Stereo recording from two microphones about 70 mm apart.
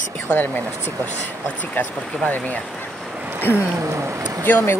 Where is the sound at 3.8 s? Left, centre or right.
Right.